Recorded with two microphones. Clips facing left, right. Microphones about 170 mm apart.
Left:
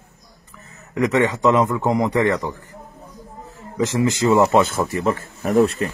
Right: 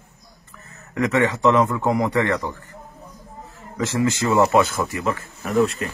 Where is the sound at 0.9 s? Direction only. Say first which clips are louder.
Left 2 dB; 20° left (ahead or behind).